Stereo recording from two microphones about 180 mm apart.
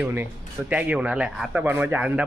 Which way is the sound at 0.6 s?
5° right (ahead or behind).